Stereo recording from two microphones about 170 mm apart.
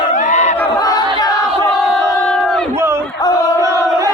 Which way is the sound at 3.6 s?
20° right (ahead or behind).